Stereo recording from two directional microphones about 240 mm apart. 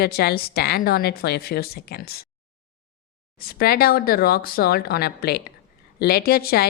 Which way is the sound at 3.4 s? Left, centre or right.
Left.